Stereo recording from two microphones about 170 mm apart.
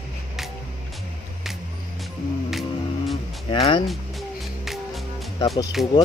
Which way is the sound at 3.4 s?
30° left (ahead or behind).